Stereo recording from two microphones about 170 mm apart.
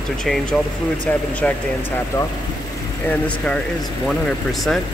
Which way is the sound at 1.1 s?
10° left (ahead or behind).